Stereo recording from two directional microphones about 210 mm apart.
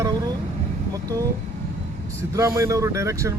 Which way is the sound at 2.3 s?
15° right (ahead or behind).